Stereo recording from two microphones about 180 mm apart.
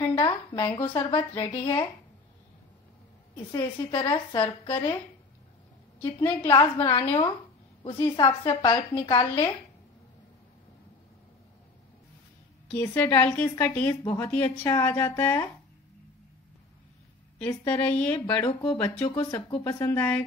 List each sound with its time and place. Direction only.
0.0 s a woman's voice: 25° left (ahead or behind)
3.5 s a woman's voice: 25° left (ahead or behind)
6.4 s a woman's voice: 25° left (ahead or behind)
12.7 s a woman's voice: 10° left (ahead or behind)
17.4 s a woman's voice: 10° left (ahead or behind)
18.4 s a woman's voice: 25° left (ahead or behind)
19.6 s a woman's voice: 15° left (ahead or behind)